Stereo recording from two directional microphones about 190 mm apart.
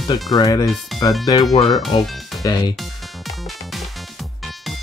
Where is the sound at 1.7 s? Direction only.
Centre (ahead or behind).